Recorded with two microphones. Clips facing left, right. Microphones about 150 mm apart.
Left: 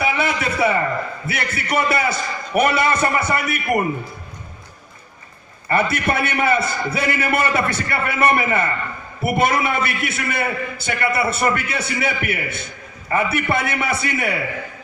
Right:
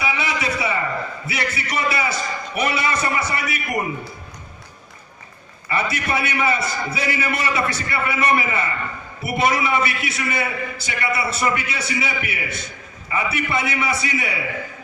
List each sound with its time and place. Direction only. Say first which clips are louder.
0.0 s a sound: left 3 dB; 50° left (ahead or behind)
1.2 s a man's voice: even; 55° left (ahead or behind)
5.7 s a man's voice: left 4 dB; 55° left (ahead or behind)